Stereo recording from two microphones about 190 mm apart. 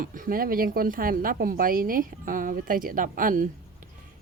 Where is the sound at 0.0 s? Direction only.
45° right (ahead or behind).